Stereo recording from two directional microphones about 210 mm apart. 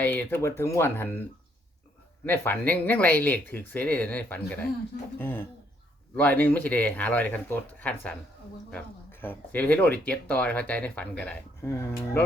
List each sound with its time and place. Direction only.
0.0 s speech: 10° left (ahead or behind)
2.2 s speech: 10° left (ahead or behind)
9.2 s speech: 10° left (ahead or behind)